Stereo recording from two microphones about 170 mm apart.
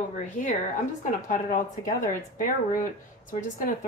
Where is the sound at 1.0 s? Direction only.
50° left (ahead or behind).